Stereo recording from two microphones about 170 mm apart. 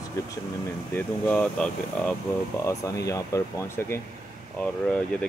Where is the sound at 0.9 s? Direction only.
10° left (ahead or behind).